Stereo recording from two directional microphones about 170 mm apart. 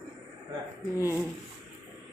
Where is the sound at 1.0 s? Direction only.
20° left (ahead or behind).